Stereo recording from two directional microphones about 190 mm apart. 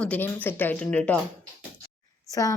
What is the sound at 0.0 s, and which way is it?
Speech, 10° left (ahead or behind).